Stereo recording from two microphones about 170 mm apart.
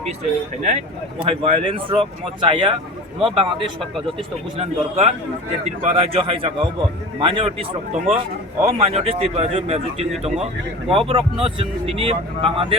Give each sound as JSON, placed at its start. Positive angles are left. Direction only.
{"t": 1.2, "sound": "speech", "side_deg": -35}